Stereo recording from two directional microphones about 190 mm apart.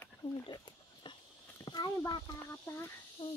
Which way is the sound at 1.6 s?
20° left (ahead or behind).